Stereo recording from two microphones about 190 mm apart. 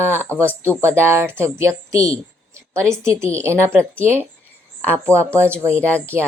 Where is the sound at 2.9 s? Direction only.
15° right (ahead or behind).